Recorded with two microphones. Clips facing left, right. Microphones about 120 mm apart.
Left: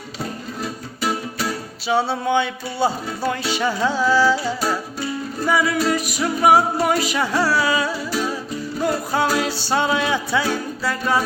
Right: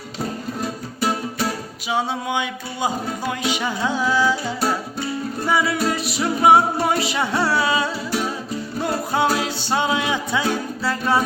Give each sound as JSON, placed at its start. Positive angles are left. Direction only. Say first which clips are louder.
{"t": 1.9, "sound": "music", "louder": "left 4 dB", "side_deg": -15}